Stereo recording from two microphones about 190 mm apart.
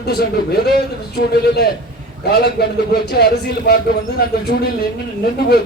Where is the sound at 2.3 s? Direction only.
55° left (ahead or behind).